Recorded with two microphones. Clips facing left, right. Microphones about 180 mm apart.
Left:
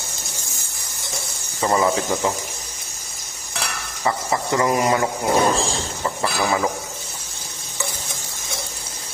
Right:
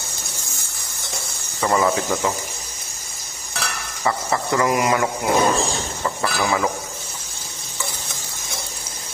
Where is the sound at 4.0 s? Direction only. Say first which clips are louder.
Even; 20° left (ahead or behind).